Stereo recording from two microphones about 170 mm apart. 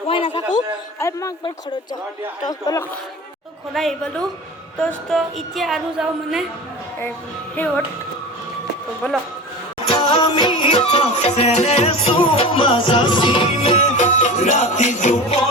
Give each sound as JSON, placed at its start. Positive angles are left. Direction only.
{"t": 0.1, "sound": "a sound", "side_deg": 30}
{"t": 0.9, "sound": "a man's voice", "side_deg": 15}
{"t": 3.8, "sound": "a woman's voice", "side_deg": 0}
{"t": 9.8, "sound": "music", "side_deg": 35}